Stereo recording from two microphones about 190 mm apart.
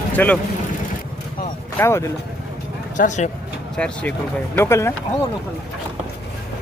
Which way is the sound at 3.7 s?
5° left (ahead or behind).